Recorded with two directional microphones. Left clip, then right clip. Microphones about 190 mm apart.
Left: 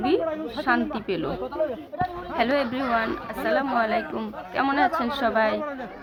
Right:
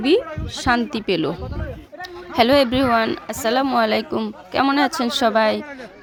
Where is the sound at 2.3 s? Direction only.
65° right (ahead or behind).